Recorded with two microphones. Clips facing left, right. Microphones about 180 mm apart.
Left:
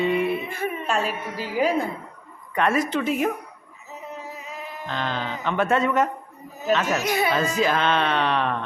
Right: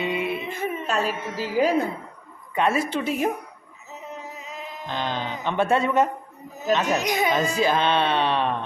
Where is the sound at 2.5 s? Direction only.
25° right (ahead or behind).